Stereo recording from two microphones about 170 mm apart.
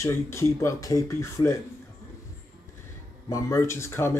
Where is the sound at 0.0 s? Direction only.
15° left (ahead or behind).